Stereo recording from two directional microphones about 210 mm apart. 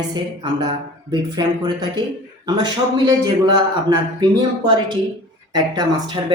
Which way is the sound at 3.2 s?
20° right (ahead or behind).